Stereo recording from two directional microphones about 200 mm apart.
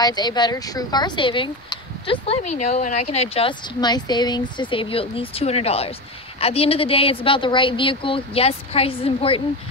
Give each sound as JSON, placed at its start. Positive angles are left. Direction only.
{"t": 0.0, "sound": "speech", "side_deg": 20}